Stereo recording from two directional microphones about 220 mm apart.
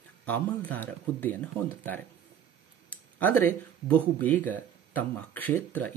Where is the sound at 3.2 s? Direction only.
10° left (ahead or behind).